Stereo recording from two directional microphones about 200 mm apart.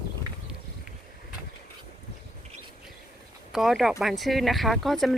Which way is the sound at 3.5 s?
Centre (ahead or behind).